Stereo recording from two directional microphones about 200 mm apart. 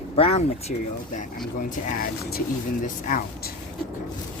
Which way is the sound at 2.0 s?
50° left (ahead or behind).